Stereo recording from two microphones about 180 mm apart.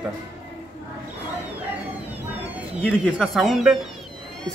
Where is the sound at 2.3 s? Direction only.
10° right (ahead or behind).